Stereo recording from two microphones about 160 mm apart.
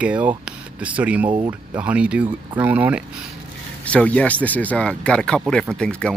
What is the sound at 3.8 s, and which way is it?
Speech, 10° left (ahead or behind).